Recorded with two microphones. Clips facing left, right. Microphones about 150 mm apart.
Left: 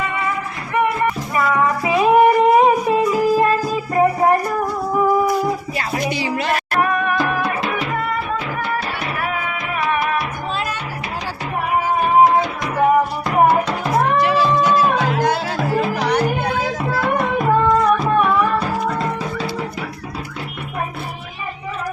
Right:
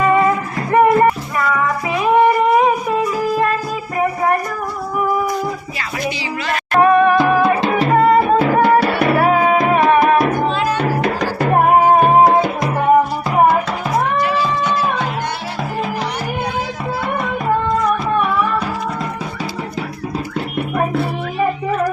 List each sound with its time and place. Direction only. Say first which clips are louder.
0.0 s music: right 9 dB; 45° right (ahead or behind)
6.7 s music: right 10 dB; 25° right (ahead or behind)
8.4 s music: right 11 dB; 55° right (ahead or behind)
8.8 s music: right 10 dB; 65° right (ahead or behind)
9.1 s music: right 12 dB; 40° right (ahead or behind)
9.6 s salsa music: right 9 dB; 55° right (ahead or behind)
11.0 s music: right 9 dB; 60° right (ahead or behind)